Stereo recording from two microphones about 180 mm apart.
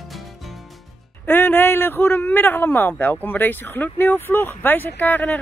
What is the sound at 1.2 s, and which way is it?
A man's voice, 10° left (ahead or behind).